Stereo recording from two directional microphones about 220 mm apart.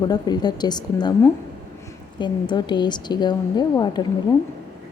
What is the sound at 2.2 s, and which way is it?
A woman's voice, 20° left (ahead or behind).